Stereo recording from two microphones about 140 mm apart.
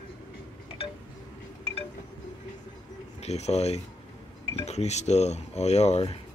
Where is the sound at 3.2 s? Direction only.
50° left (ahead or behind).